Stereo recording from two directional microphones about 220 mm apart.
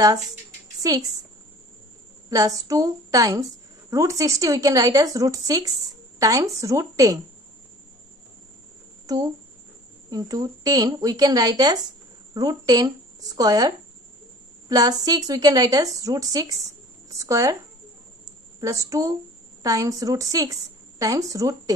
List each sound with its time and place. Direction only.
2.2 s a woman's voice: 15° right (ahead or behind)
9.0 s a woman's voice: 15° right (ahead or behind)
18.6 s a woman's voice: 15° right (ahead or behind)